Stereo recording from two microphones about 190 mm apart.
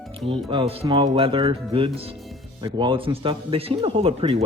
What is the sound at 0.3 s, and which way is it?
Speech, 25° right (ahead or behind).